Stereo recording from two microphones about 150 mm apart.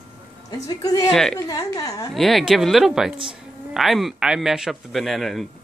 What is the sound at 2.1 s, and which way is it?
A man's voice, centre (ahead or behind).